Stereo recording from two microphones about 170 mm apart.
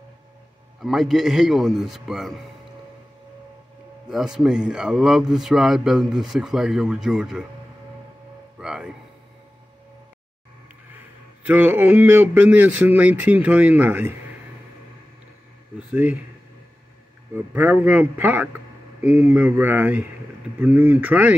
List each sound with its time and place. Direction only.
0.7 s a man's voice: centre (ahead or behind)
4.1 s a man's voice: centre (ahead or behind)
8.5 s music: 5° right (ahead or behind)
11.4 s speech: 10° right (ahead or behind)
15.9 s speech: 10° right (ahead or behind)
17.6 s speech: 10° right (ahead or behind)